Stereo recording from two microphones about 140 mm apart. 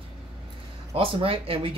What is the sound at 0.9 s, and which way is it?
Speech, 40° right (ahead or behind).